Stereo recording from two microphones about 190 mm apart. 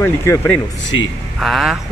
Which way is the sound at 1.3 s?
Centre (ahead or behind).